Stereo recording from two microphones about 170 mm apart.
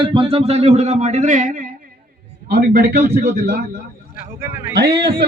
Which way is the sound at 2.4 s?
65° right (ahead or behind).